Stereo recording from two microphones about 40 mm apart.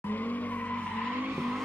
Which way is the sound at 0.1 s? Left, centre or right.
Left.